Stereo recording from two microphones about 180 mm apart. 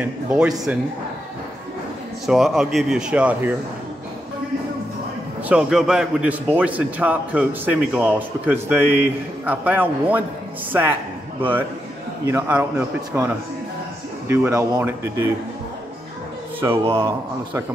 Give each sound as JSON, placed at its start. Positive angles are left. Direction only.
{"t": 0.0, "sound": "a man's voice", "side_deg": -5}
{"t": 2.2, "sound": "speech", "side_deg": 0}
{"t": 5.5, "sound": "a man's voice", "side_deg": -5}
{"t": 12.3, "sound": "a man's voice", "side_deg": -10}
{"t": 16.6, "sound": "speech", "side_deg": -20}